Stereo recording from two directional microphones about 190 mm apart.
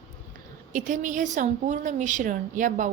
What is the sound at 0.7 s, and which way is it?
A woman's voice, 40° right (ahead or behind).